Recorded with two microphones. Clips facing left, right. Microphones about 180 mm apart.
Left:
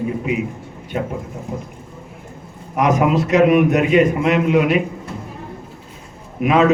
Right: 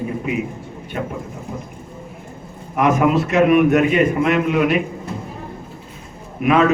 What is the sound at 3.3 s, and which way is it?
A man's voice, 20° left (ahead or behind).